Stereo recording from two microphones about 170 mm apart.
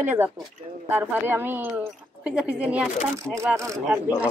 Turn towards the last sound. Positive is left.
turn(degrees=-15)  # may be behind; listen again after turning